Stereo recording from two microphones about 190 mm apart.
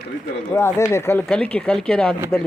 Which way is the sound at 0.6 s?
15° left (ahead or behind).